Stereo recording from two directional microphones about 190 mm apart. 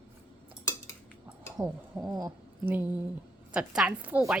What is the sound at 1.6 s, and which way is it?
Speech, 20° right (ahead or behind).